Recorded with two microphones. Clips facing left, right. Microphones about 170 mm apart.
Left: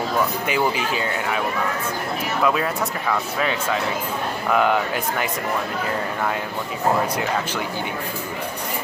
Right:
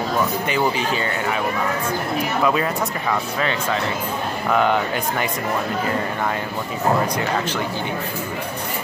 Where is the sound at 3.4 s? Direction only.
5° left (ahead or behind).